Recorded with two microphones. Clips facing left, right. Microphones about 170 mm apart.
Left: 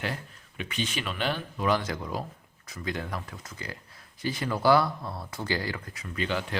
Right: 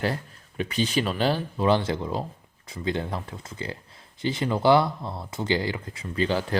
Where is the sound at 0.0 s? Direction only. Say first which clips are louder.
Right 6 dB; 35° right (ahead or behind).